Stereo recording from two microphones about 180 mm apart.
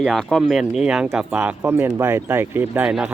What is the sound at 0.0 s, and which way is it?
A man's voice, centre (ahead or behind).